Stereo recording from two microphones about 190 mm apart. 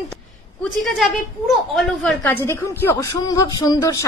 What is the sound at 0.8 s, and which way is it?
A woman's voice, centre (ahead or behind).